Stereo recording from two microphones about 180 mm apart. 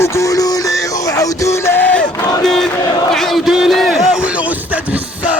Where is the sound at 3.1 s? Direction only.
Centre (ahead or behind).